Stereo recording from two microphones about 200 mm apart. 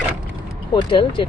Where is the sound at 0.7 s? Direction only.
25° left (ahead or behind).